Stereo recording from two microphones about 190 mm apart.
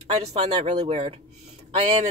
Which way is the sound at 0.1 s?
30° right (ahead or behind).